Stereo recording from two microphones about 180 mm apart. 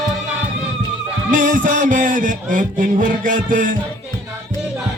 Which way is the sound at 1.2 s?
45° right (ahead or behind).